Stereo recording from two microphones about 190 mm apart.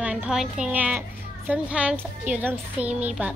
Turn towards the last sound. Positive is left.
turn(degrees=-5)  # may be behind; listen again after turning